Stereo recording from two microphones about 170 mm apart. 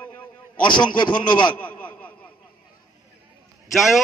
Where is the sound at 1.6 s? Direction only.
10° left (ahead or behind).